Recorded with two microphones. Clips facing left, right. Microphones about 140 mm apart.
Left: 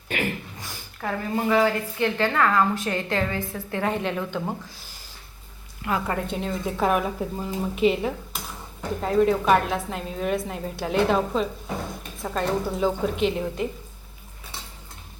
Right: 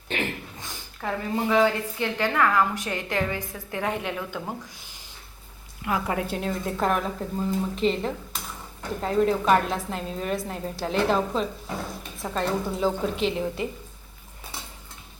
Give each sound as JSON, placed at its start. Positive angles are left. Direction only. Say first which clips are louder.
{"t": 1.0, "sound": "speech", "louder": "left 1 dB", "side_deg": 0}
{"t": 2.0, "sound": "a woman's voice", "louder": "left 2 dB", "side_deg": -15}
{"t": 5.8, "sound": "speech", "louder": "even", "side_deg": -5}